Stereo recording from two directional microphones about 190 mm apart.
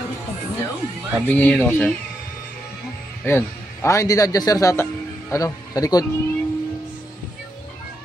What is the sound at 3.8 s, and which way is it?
Speech, 15° left (ahead or behind).